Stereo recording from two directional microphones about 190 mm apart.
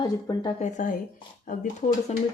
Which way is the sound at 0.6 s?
40° left (ahead or behind).